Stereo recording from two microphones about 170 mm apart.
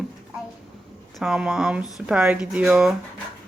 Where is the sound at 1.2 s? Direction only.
5° right (ahead or behind).